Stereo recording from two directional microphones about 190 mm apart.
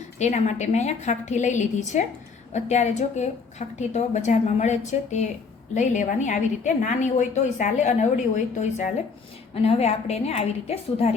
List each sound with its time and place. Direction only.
0.2 s a woman's voice: 40° left (ahead or behind)